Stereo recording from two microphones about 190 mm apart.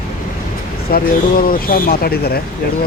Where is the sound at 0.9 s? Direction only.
50° left (ahead or behind).